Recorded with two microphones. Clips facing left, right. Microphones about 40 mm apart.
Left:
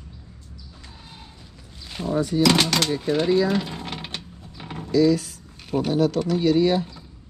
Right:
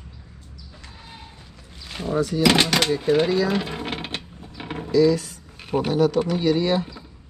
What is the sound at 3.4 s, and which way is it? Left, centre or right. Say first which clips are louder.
Mechanisms: even; centre.